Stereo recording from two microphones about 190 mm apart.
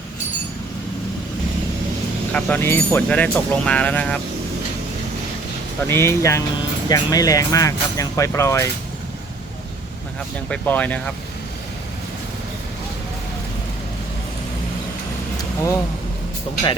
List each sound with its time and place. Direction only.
2.3 s speech: 10° left (ahead or behind)
5.9 s speech: 15° left (ahead or behind)
10.5 s speech: 10° left (ahead or behind)